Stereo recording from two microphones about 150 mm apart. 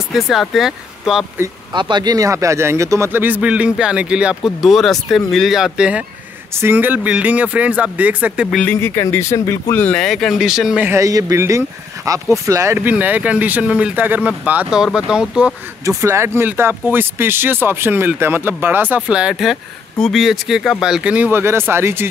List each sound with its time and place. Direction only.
0.1 s speech: centre (ahead or behind)
1.7 s speech: 30° right (ahead or behind); by 8.5 s 10° right (ahead or behind)
8.5 s speech: 15° left (ahead or behind); by 10.9 s 5° right (ahead or behind)
10.9 s speech: 20° right (ahead or behind); by 15.5 s 5° right (ahead or behind)
15.8 s speech: 20° right (ahead or behind)